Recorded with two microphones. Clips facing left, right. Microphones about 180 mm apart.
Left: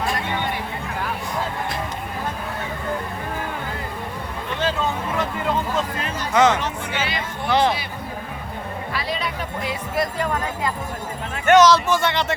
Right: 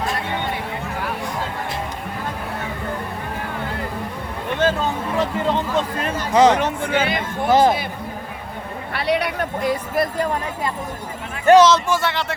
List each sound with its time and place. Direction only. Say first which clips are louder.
5.1 s a sound: right 6 dB; 30° right (ahead or behind)
6.0 s music: right 4 dB; 50° right (ahead or behind)
6.3 s speech: right 3 dB; 35° right (ahead or behind)
6.6 s speech: right 6 dB; 55° right (ahead or behind)
8.9 s a sound: right 8 dB; 65° right (ahead or behind)
9.6 s speech: right 3 dB; 50° right (ahead or behind)
11.4 s speech: right 2 dB; 30° right (ahead or behind)
11.9 s speech: even; 5° right (ahead or behind)